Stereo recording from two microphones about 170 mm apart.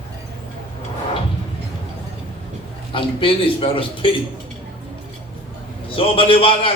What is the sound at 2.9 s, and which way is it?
A man's voice, 30° left (ahead or behind).